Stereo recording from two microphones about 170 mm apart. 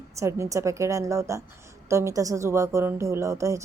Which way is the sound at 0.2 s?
15° right (ahead or behind).